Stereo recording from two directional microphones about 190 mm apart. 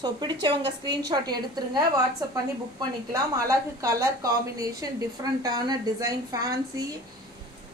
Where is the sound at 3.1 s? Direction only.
15° right (ahead or behind).